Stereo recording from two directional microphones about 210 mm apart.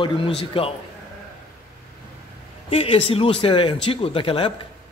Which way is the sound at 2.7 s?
25° left (ahead or behind).